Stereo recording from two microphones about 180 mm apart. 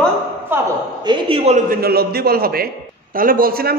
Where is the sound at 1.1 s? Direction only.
30° right (ahead or behind).